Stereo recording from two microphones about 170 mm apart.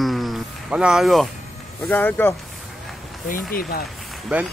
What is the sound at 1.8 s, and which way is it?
Speech, 10° left (ahead or behind).